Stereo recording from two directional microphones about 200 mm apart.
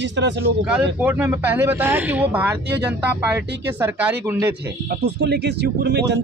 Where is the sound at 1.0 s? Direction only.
10° right (ahead or behind).